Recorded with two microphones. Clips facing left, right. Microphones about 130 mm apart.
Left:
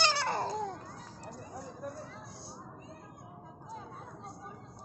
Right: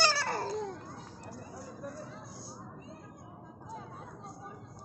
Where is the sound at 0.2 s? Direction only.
20° left (ahead or behind).